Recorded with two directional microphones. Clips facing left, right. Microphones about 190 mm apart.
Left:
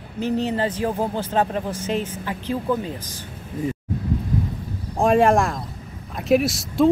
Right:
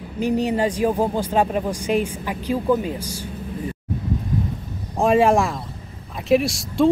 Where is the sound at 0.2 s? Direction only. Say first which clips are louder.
Right 2 dB; 15° right (ahead or behind).